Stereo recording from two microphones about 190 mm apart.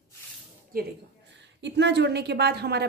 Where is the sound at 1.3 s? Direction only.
70° right (ahead or behind).